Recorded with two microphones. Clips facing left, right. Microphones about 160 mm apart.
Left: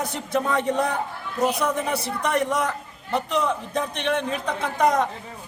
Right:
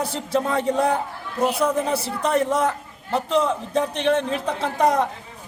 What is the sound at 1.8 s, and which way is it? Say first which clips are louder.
A man's voice: right 2 dB; 30° right (ahead or behind).